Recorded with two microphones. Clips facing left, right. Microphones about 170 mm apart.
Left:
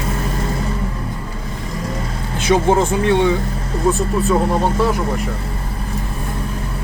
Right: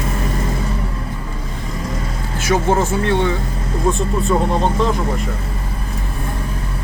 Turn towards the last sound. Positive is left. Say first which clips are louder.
# left 1 dB
turn(degrees=5)  # may be behind; listen again after turning